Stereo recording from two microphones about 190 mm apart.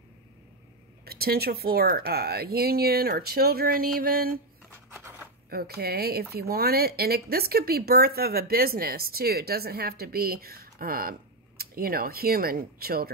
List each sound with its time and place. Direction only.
1.0 s speech: 55° right (ahead or behind)
4.6 s scissors: 15° right (ahead or behind)
5.5 s speech: 55° right (ahead or behind)